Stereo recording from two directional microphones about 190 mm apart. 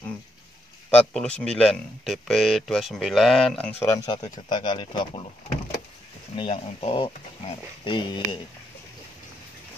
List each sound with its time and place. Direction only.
0.8 s speech: 5° left (ahead or behind)
3.8 s speech: 15° left (ahead or behind)
6.3 s speech: 25° left (ahead or behind)